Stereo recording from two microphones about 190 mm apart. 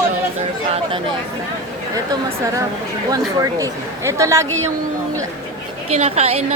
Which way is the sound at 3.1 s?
15° right (ahead or behind).